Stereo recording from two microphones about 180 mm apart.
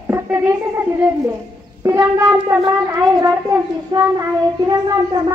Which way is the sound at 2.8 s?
20° right (ahead or behind).